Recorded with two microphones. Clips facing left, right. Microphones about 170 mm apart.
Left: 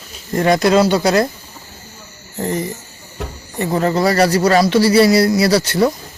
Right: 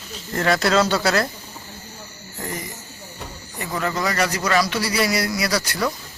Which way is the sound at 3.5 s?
30° left (ahead or behind).